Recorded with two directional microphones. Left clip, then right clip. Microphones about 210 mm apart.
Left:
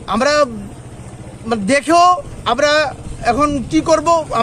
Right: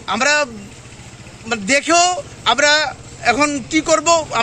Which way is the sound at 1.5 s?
5° right (ahead or behind).